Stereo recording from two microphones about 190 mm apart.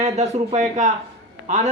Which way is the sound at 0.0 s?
35° right (ahead or behind).